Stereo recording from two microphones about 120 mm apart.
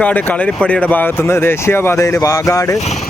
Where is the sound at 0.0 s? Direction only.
15° left (ahead or behind).